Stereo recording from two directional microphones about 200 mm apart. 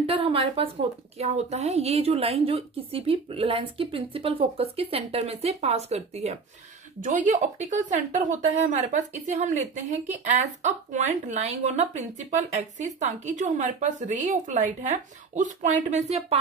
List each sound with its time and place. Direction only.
0.0 s speech: 30° right (ahead or behind)